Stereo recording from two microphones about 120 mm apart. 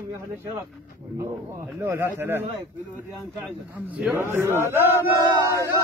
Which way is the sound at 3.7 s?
15° right (ahead or behind).